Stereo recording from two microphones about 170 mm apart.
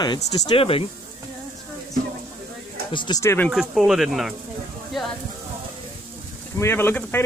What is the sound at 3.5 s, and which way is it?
Speech, centre (ahead or behind).